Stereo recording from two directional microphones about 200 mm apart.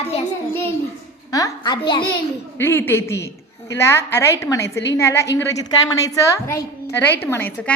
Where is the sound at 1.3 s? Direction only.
15° left (ahead or behind).